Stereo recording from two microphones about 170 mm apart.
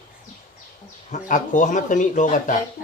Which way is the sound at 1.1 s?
45° left (ahead or behind).